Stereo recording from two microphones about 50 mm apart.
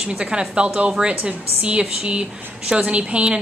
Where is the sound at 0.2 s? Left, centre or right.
Centre.